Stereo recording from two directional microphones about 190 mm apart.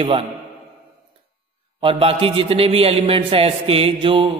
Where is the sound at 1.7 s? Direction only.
30° right (ahead or behind).